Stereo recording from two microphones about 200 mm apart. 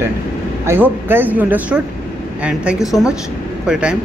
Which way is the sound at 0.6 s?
10° right (ahead or behind).